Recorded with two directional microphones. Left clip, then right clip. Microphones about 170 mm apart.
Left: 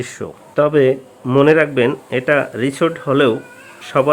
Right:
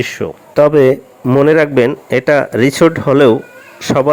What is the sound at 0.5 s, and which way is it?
Speech, 35° right (ahead or behind).